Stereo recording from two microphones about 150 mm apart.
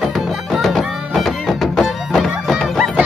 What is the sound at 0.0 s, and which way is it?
Music, centre (ahead or behind).